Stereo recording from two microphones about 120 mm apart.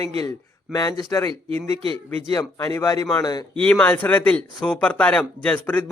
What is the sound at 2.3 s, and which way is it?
Speech, 25° left (ahead or behind).